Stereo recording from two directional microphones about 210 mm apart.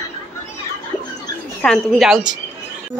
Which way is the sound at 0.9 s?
Centre (ahead or behind).